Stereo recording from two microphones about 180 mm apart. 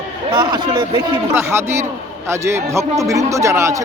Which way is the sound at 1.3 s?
10° right (ahead or behind).